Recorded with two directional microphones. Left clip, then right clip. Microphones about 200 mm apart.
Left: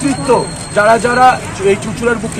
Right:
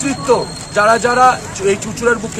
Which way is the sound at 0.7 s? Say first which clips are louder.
Left 2 dB; 10° right (ahead or behind).